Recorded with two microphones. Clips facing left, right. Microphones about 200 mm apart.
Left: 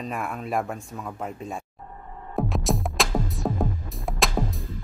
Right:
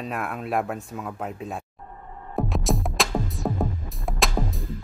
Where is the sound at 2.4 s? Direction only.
Centre (ahead or behind).